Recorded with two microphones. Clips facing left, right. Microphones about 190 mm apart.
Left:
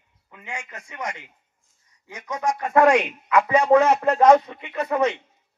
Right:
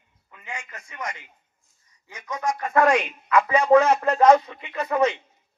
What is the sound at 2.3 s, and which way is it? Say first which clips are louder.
Speech: left 2 dB; 75° left (ahead or behind).